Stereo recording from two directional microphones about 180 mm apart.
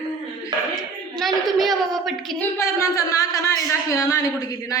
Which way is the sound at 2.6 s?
15° left (ahead or behind).